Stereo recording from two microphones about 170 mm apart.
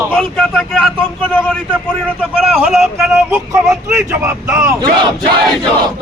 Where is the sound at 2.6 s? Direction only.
5° right (ahead or behind).